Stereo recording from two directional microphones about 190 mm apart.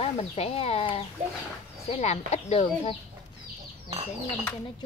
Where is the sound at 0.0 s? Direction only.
30° left (ahead or behind).